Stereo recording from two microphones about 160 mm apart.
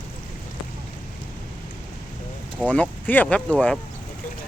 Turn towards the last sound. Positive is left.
turn(degrees=5)  # may be behind; listen again after turning